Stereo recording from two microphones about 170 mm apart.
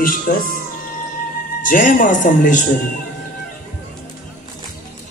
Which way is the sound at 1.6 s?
55° left (ahead or behind).